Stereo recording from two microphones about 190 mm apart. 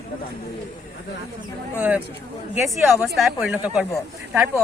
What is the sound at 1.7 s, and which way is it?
Speech, 5° right (ahead or behind).